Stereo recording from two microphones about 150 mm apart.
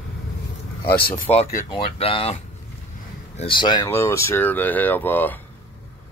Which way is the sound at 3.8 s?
15° left (ahead or behind).